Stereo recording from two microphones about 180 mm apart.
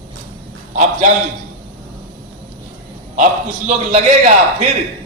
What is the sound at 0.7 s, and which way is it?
Speech, 45° right (ahead or behind).